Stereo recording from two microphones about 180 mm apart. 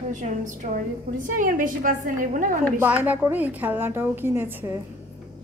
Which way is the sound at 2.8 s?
10° right (ahead or behind).